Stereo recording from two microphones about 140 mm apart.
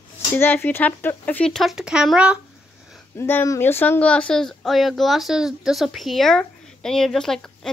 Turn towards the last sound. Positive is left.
turn(degrees=5)  # may be behind; listen again after turning